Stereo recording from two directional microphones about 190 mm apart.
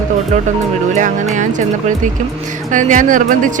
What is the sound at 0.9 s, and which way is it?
Speech, 40° right (ahead or behind).